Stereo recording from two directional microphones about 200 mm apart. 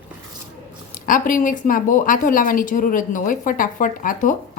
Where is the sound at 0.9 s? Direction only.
40° left (ahead or behind).